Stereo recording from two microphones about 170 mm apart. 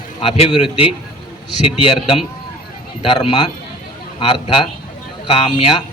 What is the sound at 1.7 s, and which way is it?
A man's voice, 30° left (ahead or behind).